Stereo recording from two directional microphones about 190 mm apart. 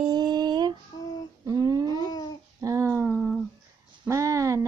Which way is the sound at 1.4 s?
20° right (ahead or behind).